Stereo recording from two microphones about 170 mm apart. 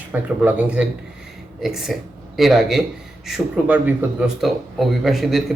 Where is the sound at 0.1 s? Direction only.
10° right (ahead or behind).